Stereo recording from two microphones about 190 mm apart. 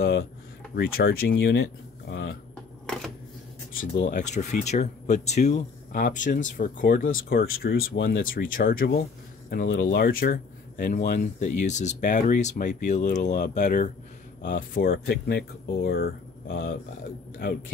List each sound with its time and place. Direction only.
0.0 s speech: 55° left (ahead or behind)
3.7 s speech: 45° left (ahead or behind)